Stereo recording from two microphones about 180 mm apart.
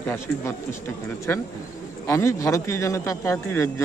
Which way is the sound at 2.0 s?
15° left (ahead or behind).